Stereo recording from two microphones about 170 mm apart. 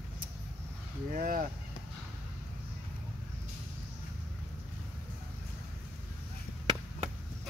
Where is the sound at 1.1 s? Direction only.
55° right (ahead or behind).